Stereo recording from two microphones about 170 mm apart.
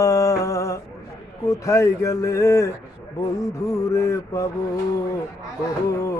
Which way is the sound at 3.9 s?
15° left (ahead or behind).